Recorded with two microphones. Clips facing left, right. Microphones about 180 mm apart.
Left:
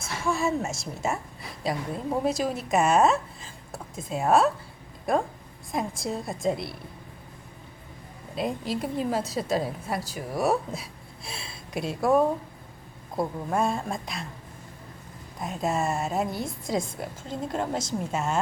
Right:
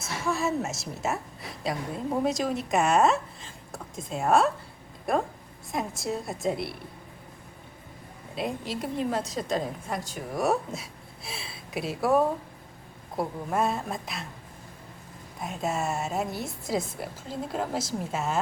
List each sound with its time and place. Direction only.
0.0 s a woman's voice: centre (ahead or behind)
8.4 s a woman's voice: centre (ahead or behind)
15.4 s a woman's voice: centre (ahead or behind)